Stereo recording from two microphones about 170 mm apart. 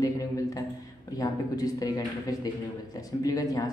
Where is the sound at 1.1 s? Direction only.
20° left (ahead or behind).